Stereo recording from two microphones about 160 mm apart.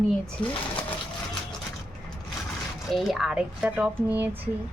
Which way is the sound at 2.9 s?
Centre (ahead or behind).